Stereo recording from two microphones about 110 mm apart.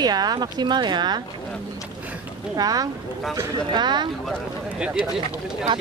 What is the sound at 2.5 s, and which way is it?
Speech, 35° right (ahead or behind).